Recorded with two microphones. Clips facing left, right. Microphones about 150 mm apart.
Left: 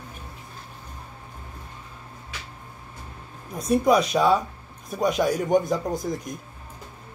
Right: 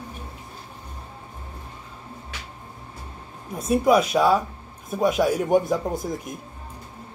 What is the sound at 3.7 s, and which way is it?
Speech, 5° right (ahead or behind).